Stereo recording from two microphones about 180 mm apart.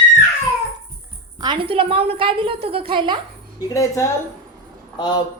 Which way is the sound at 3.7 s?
15° left (ahead or behind).